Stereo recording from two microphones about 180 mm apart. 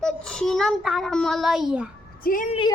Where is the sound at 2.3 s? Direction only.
55° left (ahead or behind).